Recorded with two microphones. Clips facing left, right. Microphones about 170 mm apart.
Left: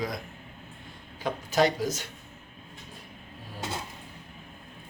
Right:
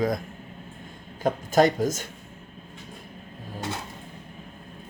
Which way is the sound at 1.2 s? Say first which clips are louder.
Right 5 dB; 45° right (ahead or behind).